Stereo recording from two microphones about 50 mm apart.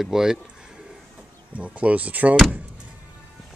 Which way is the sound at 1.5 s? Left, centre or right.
Right.